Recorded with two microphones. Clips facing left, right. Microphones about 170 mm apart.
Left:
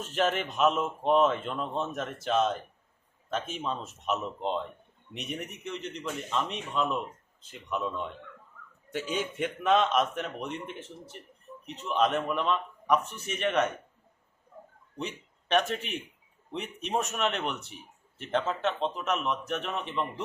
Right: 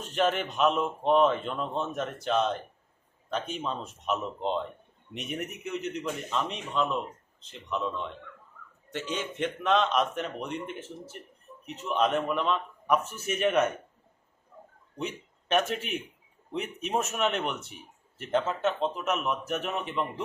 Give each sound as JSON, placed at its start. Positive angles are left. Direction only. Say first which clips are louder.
{"t": 0.0, "sound": "speech", "louder": "right 1 dB", "side_deg": 0}
{"t": 14.9, "sound": "speech", "louder": "right 2 dB", "side_deg": 0}